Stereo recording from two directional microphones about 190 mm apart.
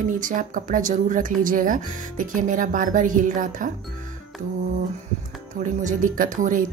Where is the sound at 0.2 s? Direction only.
45° right (ahead or behind).